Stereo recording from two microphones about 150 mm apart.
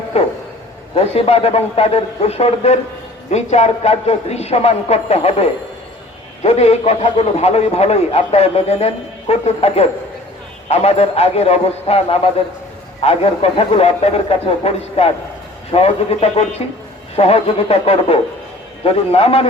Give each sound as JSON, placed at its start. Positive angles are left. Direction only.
{"t": 0.1, "sound": "a man's voice", "side_deg": 40}